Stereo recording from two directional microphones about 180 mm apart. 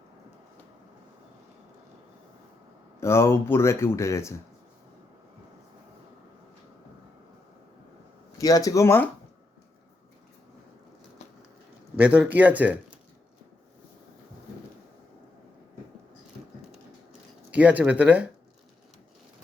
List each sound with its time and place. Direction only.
3.0 s speech: 15° left (ahead or behind)
8.4 s speech: 20° left (ahead or behind)
11.9 s a man's voice: 10° right (ahead or behind)
17.5 s a man's voice: 10° right (ahead or behind)